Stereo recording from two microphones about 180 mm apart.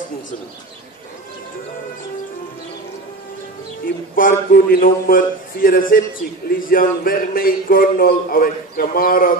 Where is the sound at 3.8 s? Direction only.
50° left (ahead or behind).